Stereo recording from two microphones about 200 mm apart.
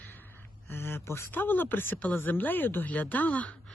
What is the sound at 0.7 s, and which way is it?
Speech, 10° left (ahead or behind).